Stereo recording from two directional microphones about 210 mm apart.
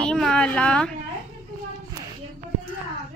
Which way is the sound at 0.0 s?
5° left (ahead or behind).